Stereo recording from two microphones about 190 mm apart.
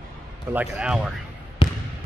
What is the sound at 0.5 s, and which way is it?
Speech, 5° right (ahead or behind).